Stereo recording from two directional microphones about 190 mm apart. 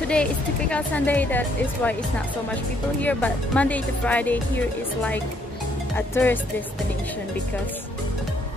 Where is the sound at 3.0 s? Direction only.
5° left (ahead or behind).